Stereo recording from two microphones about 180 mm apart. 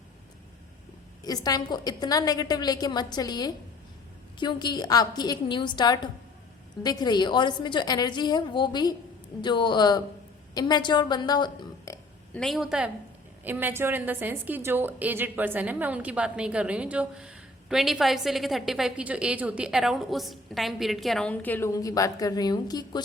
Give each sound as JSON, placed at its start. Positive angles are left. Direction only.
{"t": 1.2, "sound": "a woman's voice", "side_deg": 20}
{"t": 12.3, "sound": "a woman's voice", "side_deg": 5}